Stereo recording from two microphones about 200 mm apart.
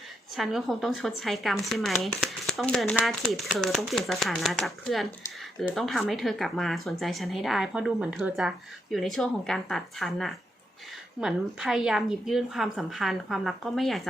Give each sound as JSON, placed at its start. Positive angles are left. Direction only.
{"t": 0.3, "sound": "speech", "side_deg": 0}